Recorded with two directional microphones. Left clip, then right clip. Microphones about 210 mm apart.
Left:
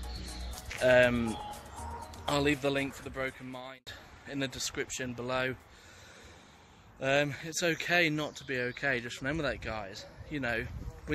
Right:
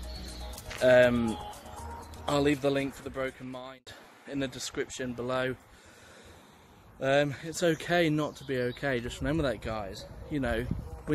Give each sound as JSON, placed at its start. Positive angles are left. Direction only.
{"t": 0.7, "sound": "speech", "side_deg": -5}
{"t": 7.0, "sound": "speech", "side_deg": -5}